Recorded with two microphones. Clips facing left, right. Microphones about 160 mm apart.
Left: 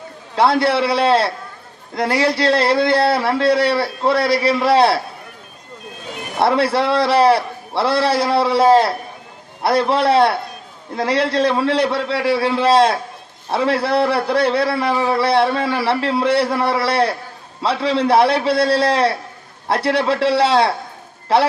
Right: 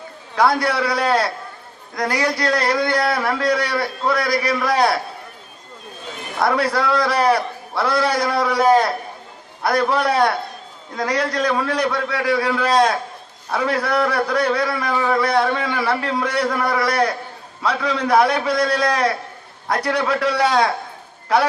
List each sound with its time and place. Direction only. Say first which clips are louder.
0.3 s a man's voice: left 3 dB; 25° left (ahead or behind)
6.4 s a man's voice: left 3 dB; 30° left (ahead or behind)